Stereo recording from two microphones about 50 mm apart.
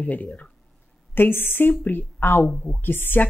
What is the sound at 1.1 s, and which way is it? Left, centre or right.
A woman's voice, left.